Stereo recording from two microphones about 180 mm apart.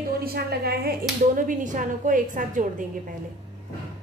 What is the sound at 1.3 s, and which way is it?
A woman's voice, 50° right (ahead or behind).